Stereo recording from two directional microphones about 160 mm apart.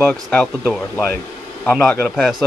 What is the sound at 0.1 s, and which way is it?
A man's voice, 10° left (ahead or behind).